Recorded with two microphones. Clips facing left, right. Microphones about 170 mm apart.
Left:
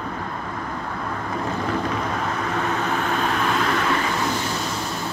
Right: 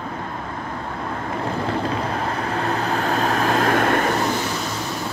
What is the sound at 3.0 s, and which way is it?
Vehicle, 40° right (ahead or behind).